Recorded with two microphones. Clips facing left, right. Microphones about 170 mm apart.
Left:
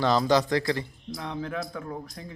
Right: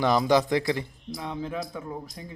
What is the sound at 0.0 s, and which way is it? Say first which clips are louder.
A man's voice: right 1 dB; 15° right (ahead or behind).